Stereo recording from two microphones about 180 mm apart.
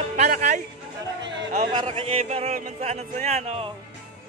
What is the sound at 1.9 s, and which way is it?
Speech, 35° right (ahead or behind).